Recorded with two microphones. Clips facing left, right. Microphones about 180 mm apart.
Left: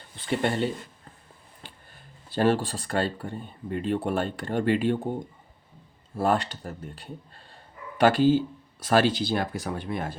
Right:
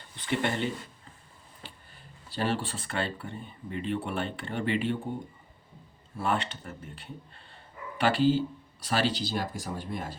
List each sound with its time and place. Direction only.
0.3 s speech: 35° left (ahead or behind)
2.3 s speech: 50° left (ahead or behind)
6.1 s speech: 40° left (ahead or behind)
7.9 s speech: 45° left (ahead or behind)